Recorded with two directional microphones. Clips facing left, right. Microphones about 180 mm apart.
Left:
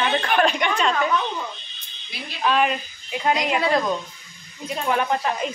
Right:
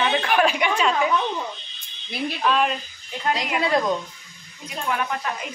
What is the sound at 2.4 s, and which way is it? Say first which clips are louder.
Speech: left 2 dB; 5° left (ahead or behind).